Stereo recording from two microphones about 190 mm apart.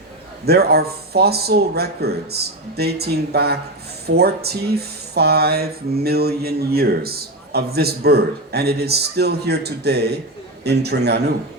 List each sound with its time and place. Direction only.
0.4 s speech: 55° right (ahead or behind)